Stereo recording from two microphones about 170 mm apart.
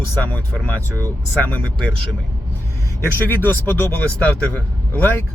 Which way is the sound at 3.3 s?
10° left (ahead or behind).